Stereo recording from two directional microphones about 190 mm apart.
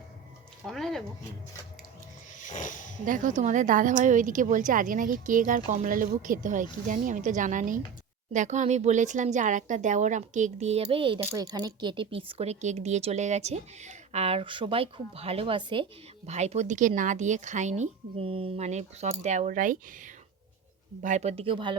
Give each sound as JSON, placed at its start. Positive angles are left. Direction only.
{"t": 0.6, "sound": "speech", "side_deg": 0}
{"t": 2.4, "sound": "a sound", "side_deg": 40}
{"t": 3.1, "sound": "a woman's voice", "side_deg": -40}